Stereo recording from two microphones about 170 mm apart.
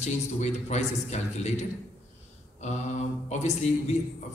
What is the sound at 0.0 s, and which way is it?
A man's voice, 40° left (ahead or behind).